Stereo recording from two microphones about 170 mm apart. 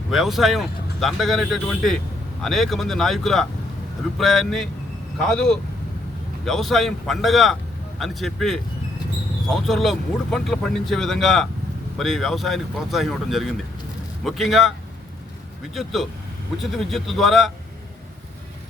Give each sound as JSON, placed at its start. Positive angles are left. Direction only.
{"t": 0.1, "sound": "speech", "side_deg": 0}
{"t": 15.7, "sound": "speech", "side_deg": 0}